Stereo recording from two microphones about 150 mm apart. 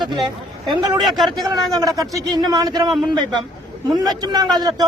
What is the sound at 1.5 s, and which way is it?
Speech, 25° right (ahead or behind).